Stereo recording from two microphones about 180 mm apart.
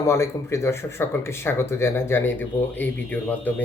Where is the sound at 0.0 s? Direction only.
15° left (ahead or behind).